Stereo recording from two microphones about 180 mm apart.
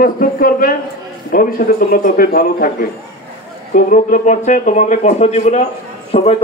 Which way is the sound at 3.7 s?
50° left (ahead or behind).